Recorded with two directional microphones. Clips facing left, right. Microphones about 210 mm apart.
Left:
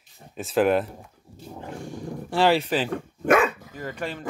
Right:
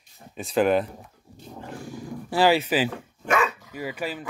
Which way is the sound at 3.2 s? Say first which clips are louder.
Left 4 dB; 50° left (ahead or behind).